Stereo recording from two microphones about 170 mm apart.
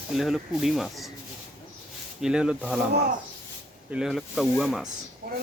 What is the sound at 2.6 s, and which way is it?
Speech, 5° left (ahead or behind).